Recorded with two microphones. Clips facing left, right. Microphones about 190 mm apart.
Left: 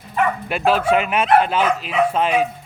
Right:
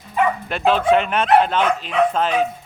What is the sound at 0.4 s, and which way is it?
Speech, 5° left (ahead or behind).